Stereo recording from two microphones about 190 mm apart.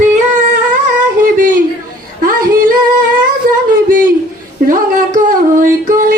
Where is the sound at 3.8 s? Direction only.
45° right (ahead or behind).